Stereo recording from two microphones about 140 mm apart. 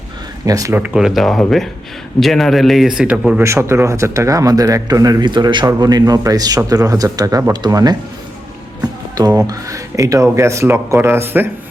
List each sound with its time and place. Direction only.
0.4 s speech: 25° right (ahead or behind)
0.8 s a man's voice: 5° right (ahead or behind)
3.4 s speech: 20° right (ahead or behind)
8.8 s music: 25° right (ahead or behind)
9.5 s speech: 25° right (ahead or behind)